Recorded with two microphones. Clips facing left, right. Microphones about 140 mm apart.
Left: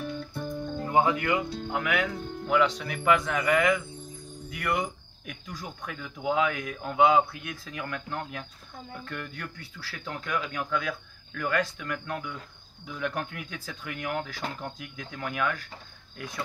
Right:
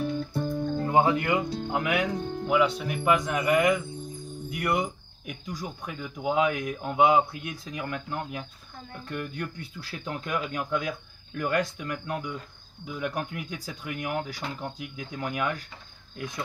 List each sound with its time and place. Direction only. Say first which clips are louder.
0.0 s music: right 5 dB; 25° right (ahead or behind)
0.9 s speech: right 1 dB; 25° right (ahead or behind)